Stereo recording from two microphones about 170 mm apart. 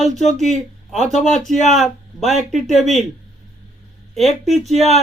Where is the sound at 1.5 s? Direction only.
45° left (ahead or behind).